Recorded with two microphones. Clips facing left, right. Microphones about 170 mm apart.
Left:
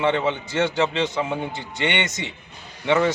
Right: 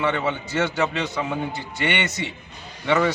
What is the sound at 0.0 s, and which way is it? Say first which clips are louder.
A man's voice: left 2 dB; 20° left (ahead or behind).